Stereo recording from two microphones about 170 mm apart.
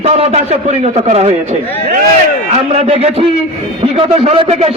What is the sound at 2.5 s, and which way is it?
A man's voice, 35° right (ahead or behind).